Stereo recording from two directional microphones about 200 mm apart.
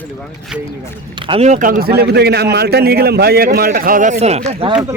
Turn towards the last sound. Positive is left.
turn(degrees=-5)  # may be behind; listen again after turning